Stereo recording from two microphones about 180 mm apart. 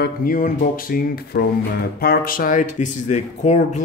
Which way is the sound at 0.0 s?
50° left (ahead or behind).